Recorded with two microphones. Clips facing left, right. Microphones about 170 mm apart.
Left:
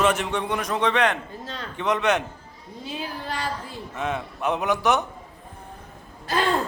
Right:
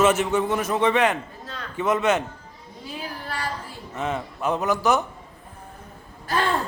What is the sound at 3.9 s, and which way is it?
A man's voice, centre (ahead or behind).